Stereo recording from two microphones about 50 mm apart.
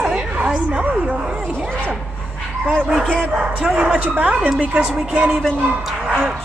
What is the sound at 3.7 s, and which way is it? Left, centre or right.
Speech, centre.